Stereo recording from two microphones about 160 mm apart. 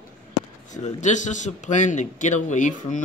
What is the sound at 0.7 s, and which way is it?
A man's voice, 45° left (ahead or behind).